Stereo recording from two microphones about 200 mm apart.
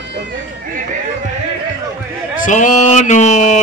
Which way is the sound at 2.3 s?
40° left (ahead or behind).